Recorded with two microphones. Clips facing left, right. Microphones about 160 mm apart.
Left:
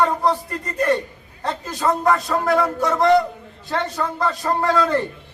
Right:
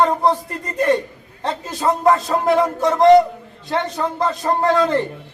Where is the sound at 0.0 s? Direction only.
25° right (ahead or behind).